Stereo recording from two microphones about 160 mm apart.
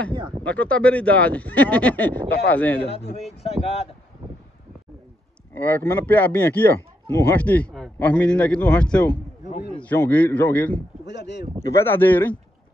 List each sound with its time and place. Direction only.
0.5 s speech: 10° left (ahead or behind)
2.9 s speech: 40° left (ahead or behind)
5.5 s speech: 15° left (ahead or behind)
11.1 s speech: 90° left
11.7 s speech: 15° left (ahead or behind)